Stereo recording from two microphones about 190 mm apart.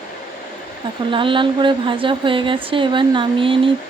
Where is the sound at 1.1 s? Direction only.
25° right (ahead or behind).